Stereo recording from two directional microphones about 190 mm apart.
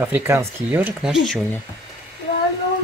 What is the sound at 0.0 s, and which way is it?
Speech, 10° right (ahead or behind).